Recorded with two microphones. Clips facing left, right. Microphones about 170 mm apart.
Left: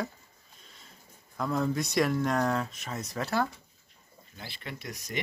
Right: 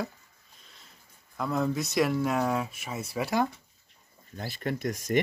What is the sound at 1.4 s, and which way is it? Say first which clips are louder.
Speech: right 1 dB; centre (ahead or behind).